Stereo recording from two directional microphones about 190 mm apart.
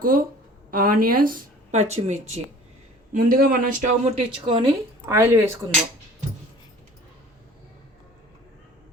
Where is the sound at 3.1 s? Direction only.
50° right (ahead or behind).